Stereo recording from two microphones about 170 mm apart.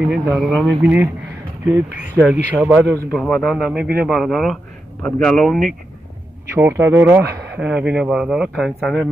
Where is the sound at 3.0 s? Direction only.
10° left (ahead or behind).